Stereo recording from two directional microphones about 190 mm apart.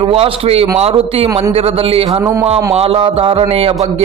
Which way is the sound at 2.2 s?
15° right (ahead or behind).